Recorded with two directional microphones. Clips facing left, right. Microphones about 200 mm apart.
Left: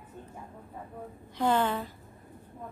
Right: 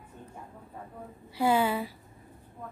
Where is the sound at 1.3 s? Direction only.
10° right (ahead or behind).